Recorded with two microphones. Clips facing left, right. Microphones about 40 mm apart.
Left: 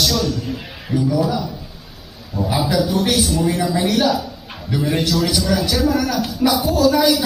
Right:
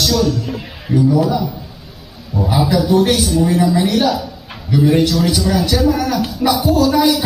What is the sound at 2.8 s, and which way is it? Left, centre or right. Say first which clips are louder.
Speech: right 5 dB; right.